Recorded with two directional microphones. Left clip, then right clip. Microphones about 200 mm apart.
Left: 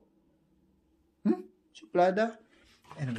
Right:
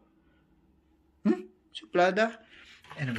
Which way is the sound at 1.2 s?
5° left (ahead or behind).